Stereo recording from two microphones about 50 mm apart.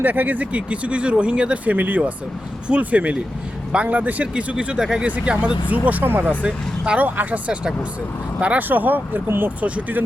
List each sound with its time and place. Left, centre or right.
0.0 s speech: right
4.5 s speech: centre
5.0 s speech: right
6.2 s speech: right
8.7 s speech: right
9.2 s speech: right
9.6 s speech: right